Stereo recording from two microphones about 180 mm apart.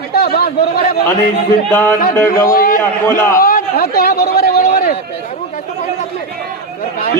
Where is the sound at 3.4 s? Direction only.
55° left (ahead or behind).